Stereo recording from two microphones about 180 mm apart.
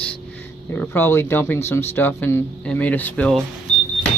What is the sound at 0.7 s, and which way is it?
Speech, 15° left (ahead or behind).